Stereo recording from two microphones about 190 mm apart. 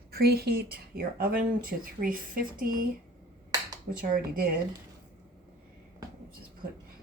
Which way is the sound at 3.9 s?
50° right (ahead or behind).